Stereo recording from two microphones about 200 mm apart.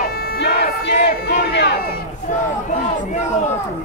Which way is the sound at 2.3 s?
35° left (ahead or behind).